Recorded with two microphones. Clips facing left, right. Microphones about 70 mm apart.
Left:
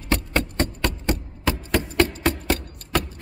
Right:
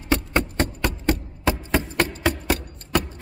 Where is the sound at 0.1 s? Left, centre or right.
Centre.